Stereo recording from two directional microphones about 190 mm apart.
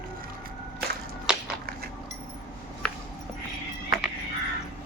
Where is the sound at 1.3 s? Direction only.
5° right (ahead or behind).